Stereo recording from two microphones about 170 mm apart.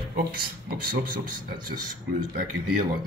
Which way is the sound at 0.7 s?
60° right (ahead or behind).